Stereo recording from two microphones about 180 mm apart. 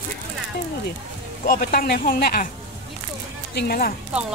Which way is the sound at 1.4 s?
55° left (ahead or behind).